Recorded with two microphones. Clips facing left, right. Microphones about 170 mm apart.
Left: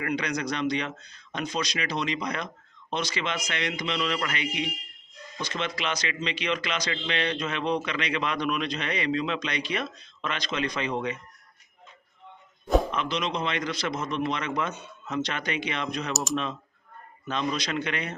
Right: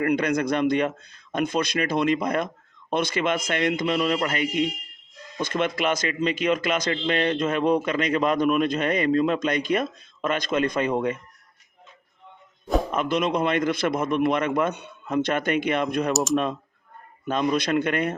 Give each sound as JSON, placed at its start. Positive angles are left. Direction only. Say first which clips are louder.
{"t": 0.0, "sound": "a man's voice", "louder": "right 7 dB", "side_deg": -50}
{"t": 12.6, "sound": "a sound", "louder": "left 1 dB", "side_deg": 0}
{"t": 12.9, "sound": "a man's voice", "louder": "right 6 dB", "side_deg": -50}
{"t": 17.2, "sound": "a man's voice", "louder": "right 6 dB", "side_deg": -50}